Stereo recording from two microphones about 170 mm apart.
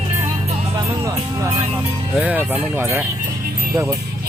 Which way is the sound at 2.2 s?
10° right (ahead or behind).